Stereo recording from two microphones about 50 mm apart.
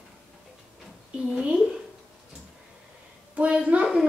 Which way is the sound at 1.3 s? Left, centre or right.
Centre.